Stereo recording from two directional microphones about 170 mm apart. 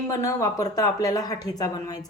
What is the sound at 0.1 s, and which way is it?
A woman's voice, 20° left (ahead or behind).